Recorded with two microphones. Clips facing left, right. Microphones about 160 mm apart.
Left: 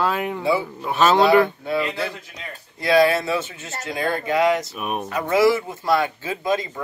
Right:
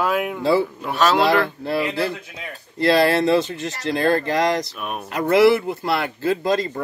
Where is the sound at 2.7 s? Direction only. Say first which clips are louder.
Even; 70° right (ahead or behind).